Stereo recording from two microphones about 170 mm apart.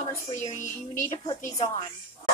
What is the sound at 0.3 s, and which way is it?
Speech, 45° left (ahead or behind).